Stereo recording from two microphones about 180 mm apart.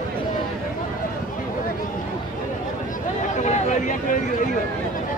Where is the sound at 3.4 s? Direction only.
40° left (ahead or behind).